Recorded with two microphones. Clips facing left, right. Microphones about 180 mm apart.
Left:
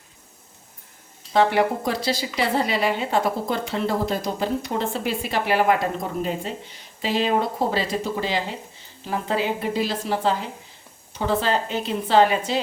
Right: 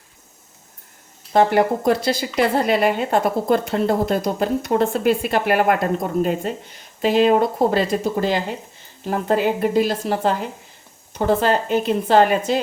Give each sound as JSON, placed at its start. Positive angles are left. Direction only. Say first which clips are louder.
{"t": 1.3, "sound": "a woman's voice", "louder": "right 3 dB", "side_deg": -45}